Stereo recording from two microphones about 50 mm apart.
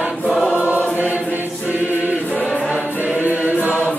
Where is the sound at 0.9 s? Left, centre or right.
Right.